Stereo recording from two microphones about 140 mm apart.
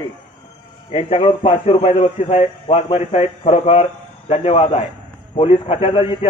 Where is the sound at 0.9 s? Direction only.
40° left (ahead or behind).